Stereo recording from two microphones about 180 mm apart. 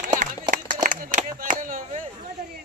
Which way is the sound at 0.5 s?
50° right (ahead or behind).